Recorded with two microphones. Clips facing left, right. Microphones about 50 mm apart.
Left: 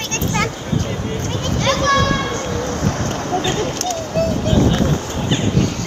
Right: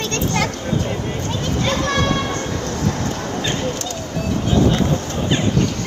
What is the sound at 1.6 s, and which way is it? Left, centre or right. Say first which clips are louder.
Children playing: left 5 dB; left.